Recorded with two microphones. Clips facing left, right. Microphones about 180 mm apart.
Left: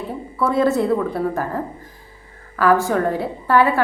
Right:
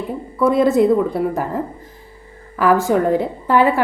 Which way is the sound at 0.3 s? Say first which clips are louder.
Right 4 dB; 15° right (ahead or behind).